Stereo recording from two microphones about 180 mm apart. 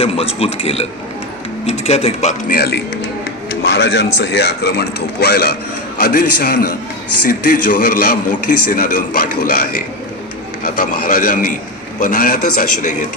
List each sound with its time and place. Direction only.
0.0 s speech: 35° left (ahead or behind)
2.5 s speech: 60° left (ahead or behind)
3.6 s a man's voice: 80° left; by 9.8 s 50° left (ahead or behind)
11.0 s a man's voice: 50° left (ahead or behind)